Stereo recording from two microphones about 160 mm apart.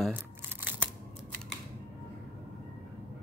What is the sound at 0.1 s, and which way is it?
Crumpling, 10° right (ahead or behind).